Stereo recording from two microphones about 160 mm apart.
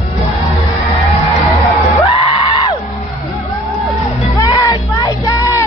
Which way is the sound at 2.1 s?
35° left (ahead or behind).